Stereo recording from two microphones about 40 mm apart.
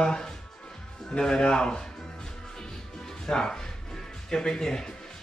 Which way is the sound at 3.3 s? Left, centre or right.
Centre.